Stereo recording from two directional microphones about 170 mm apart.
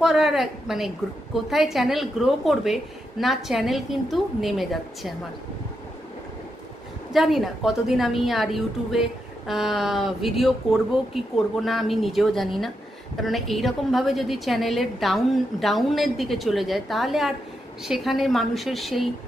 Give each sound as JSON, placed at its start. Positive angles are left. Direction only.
{"t": 0.0, "sound": "a woman's voice", "side_deg": -5}
{"t": 7.1, "sound": "a woman's voice", "side_deg": 0}